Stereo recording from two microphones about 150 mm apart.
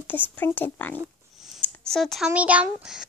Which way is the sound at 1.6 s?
5° left (ahead or behind).